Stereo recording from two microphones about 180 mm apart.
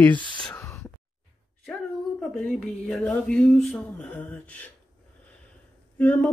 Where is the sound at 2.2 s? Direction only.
Centre (ahead or behind).